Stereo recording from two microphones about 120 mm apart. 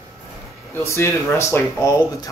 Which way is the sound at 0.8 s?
25° left (ahead or behind).